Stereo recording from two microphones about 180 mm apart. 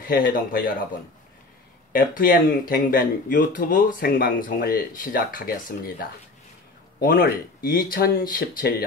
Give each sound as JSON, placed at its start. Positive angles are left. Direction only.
{"t": 0.0, "sound": "speech", "side_deg": 50}
{"t": 1.9, "sound": "speech", "side_deg": 50}